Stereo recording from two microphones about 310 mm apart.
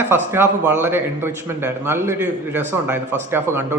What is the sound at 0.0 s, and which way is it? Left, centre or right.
Speech, centre.